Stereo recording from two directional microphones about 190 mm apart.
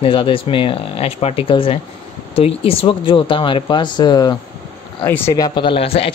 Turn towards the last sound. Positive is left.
turn(degrees=30)  # may be behind; listen again after turning